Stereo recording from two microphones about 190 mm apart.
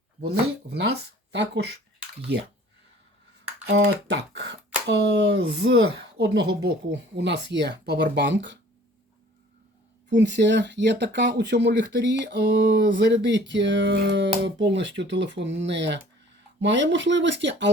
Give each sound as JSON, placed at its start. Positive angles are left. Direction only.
{"t": 0.7, "sound": "speech", "side_deg": -65}
{"t": 3.7, "sound": "speech", "side_deg": -70}
{"t": 10.2, "sound": "speech", "side_deg": -65}